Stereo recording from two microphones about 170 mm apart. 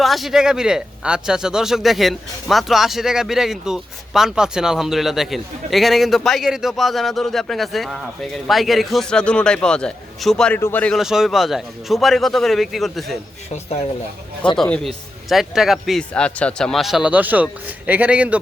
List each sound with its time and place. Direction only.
0.0 s speech: centre (ahead or behind)
13.5 s speech: 40° left (ahead or behind)
14.6 s speech: centre (ahead or behind)